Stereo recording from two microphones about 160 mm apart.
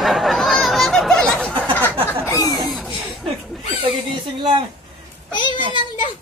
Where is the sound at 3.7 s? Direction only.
35° right (ahead or behind).